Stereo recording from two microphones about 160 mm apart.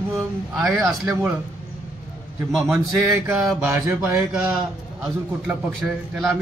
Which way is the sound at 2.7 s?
5° right (ahead or behind).